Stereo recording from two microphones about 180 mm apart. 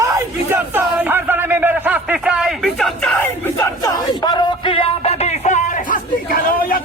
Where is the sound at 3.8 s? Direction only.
25° left (ahead or behind).